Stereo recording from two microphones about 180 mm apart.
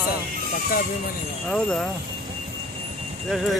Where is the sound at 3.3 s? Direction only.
Centre (ahead or behind).